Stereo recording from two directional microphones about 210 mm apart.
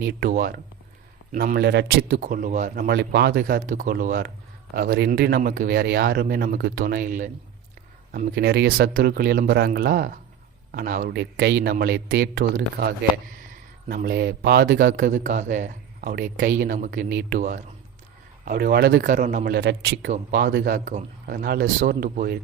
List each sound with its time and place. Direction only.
0.0 s speech: 50° right (ahead or behind)
17.1 s speech: 50° right (ahead or behind)
18.4 s speech: 45° right (ahead or behind)
19.1 s speech: 40° right (ahead or behind)
19.5 s speech: 50° right (ahead or behind)
20.7 s speech: 35° right (ahead or behind)